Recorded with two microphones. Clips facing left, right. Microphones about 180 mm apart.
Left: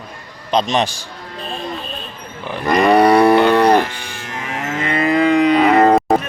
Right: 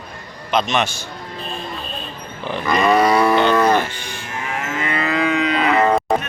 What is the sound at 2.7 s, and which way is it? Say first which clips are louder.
Speech: left 4 dB; 35° left (ahead or behind).